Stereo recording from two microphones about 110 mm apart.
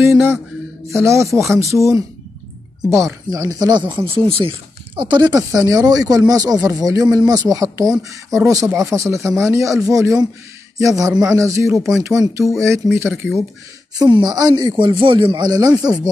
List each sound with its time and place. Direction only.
0.0 s a sound: 25° right (ahead or behind)
0.8 s speech: 25° right (ahead or behind)
3.3 s speech: 30° right (ahead or behind)
13.9 s speech: 40° right (ahead or behind)